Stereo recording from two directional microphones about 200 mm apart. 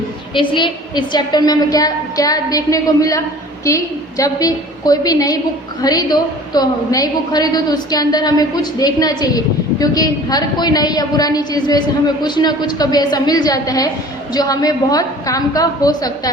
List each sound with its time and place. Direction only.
0.3 s a woman's voice: 25° left (ahead or behind)
4.2 s a woman's voice: 20° left (ahead or behind)